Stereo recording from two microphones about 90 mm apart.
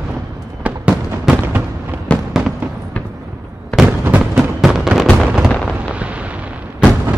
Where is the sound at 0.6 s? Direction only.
15° right (ahead or behind).